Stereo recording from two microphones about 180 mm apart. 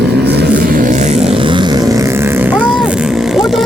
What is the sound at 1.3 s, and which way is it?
Vehicle, 25° right (ahead or behind).